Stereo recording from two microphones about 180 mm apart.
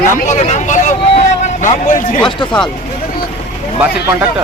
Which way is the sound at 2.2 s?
25° left (ahead or behind).